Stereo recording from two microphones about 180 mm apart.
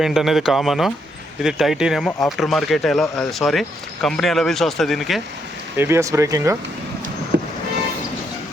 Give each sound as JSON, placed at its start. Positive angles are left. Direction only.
{"t": 0.0, "sound": "speech", "side_deg": 0}
{"t": 5.7, "sound": "speech", "side_deg": -15}
{"t": 7.3, "sound": "vehicle", "side_deg": -65}